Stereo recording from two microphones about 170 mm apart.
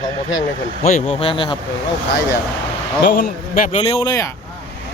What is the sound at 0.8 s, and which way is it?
Speech, 45° left (ahead or behind).